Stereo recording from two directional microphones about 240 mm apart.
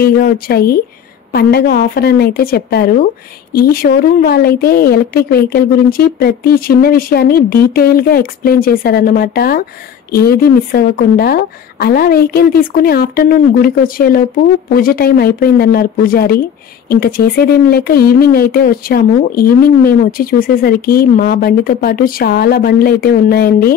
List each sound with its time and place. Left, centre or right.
0.0 s speech: left